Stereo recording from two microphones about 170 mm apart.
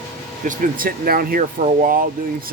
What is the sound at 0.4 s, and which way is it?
Speech, 50° right (ahead or behind).